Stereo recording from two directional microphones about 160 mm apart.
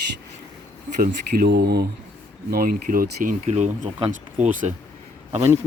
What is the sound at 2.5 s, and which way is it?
Speech, 65° right (ahead or behind).